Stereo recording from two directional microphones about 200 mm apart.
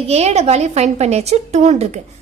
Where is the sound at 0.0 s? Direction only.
30° right (ahead or behind).